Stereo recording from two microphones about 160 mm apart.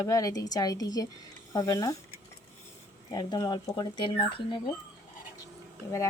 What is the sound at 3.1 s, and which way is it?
Speech, 25° left (ahead or behind).